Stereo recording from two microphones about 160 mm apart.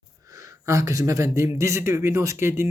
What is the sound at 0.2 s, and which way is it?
Speech, 20° right (ahead or behind).